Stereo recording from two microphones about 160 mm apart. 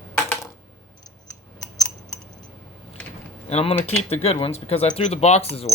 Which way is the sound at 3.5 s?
40° left (ahead or behind).